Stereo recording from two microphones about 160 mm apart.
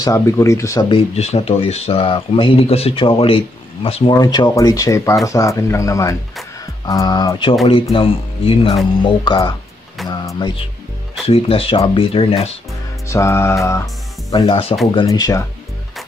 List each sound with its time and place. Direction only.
0.0 s speech: 20° left (ahead or behind)
0.8 s speech: 40° left (ahead or behind)
11.2 s speech: 35° left (ahead or behind)
13.1 s music: 15° left (ahead or behind)
14.3 s speech: 40° left (ahead or behind)
15.0 s speech: 25° left (ahead or behind)